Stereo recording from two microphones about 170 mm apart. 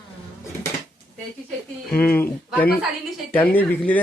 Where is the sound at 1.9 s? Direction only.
10° left (ahead or behind).